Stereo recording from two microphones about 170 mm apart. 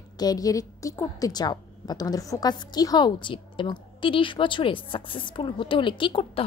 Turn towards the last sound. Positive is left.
turn(degrees=30)  # may be behind; listen again after turning